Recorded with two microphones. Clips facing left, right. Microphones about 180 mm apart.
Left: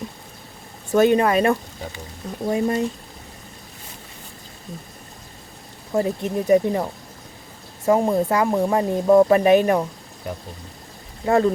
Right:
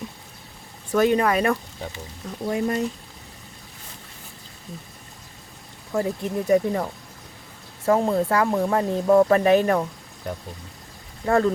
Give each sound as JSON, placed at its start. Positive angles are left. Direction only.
{"t": 0.9, "sound": "speech", "side_deg": 25}
{"t": 5.9, "sound": "speech", "side_deg": 20}
{"t": 10.3, "sound": "speech", "side_deg": 5}
{"t": 11.3, "sound": "speech", "side_deg": 20}